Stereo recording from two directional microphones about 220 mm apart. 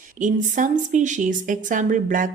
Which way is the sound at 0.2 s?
35° right (ahead or behind).